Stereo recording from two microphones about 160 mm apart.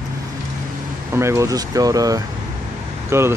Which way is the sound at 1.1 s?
15° right (ahead or behind).